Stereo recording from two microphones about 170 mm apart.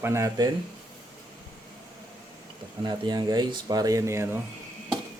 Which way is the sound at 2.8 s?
25° right (ahead or behind).